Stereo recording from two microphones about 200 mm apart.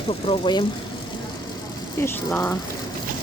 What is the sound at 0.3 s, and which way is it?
Speech, 20° left (ahead or behind).